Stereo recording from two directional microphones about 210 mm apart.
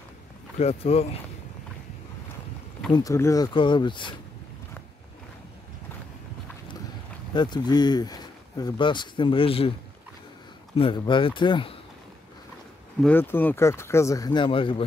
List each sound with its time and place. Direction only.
0.6 s speech: 30° left (ahead or behind)
2.9 s speech: 15° left (ahead or behind)
7.3 s speech: 20° left (ahead or behind)
10.8 s speech: 25° left (ahead or behind)
13.0 s speech: 10° left (ahead or behind)